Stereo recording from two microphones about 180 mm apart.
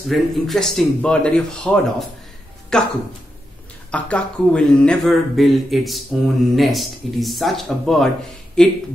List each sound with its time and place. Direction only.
0.1 s speech: centre (ahead or behind)
3.9 s speech: 5° left (ahead or behind)